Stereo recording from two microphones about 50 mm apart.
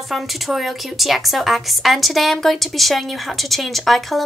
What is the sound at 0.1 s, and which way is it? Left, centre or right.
A woman's voice, centre.